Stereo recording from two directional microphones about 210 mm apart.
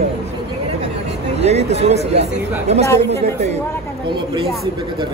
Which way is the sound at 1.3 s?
30° right (ahead or behind).